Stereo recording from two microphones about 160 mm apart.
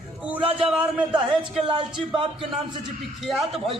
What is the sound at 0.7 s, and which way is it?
Speech, 5° right (ahead or behind).